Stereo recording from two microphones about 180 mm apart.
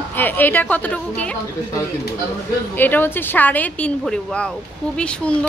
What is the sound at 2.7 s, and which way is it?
Speech, 10° left (ahead or behind).